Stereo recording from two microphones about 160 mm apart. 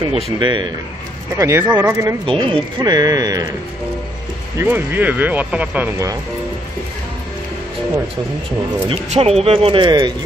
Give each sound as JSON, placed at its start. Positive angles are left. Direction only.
{"t": 0.0, "sound": "speech", "side_deg": -30}
{"t": 2.2, "sound": "speech", "side_deg": -35}
{"t": 4.6, "sound": "speech", "side_deg": -10}
{"t": 8.8, "sound": "speech", "side_deg": -40}